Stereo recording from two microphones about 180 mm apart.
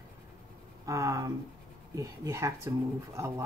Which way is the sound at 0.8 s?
15° right (ahead or behind).